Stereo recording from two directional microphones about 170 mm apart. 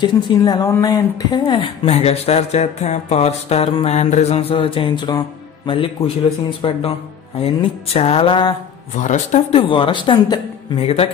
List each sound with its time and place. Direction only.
0.0 s a woman's voice: 25° left (ahead or behind)
8.9 s a woman's voice: 45° left (ahead or behind)